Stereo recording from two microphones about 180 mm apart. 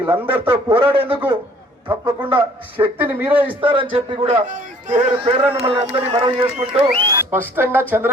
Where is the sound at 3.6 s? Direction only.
30° right (ahead or behind).